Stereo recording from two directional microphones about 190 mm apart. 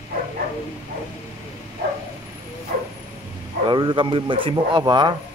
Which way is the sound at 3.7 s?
25° right (ahead or behind).